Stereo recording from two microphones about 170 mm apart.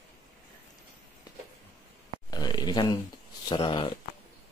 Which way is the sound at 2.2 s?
25° left (ahead or behind).